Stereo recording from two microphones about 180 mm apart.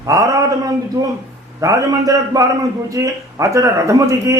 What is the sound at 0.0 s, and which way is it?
A man's voice, 20° right (ahead or behind).